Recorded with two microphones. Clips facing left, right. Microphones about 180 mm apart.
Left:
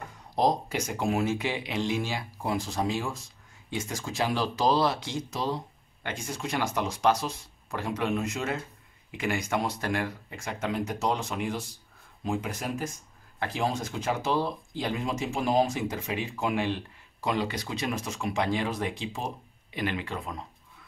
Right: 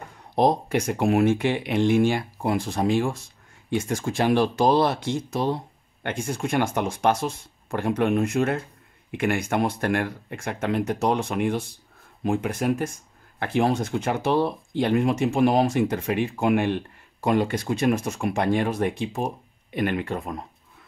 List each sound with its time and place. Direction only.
0.4 s speech: 60° right (ahead or behind)